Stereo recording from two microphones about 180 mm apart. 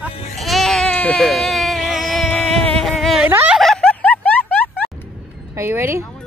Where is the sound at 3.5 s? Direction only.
5° left (ahead or behind).